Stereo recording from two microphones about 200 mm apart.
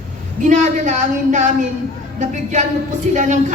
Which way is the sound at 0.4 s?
35° right (ahead or behind).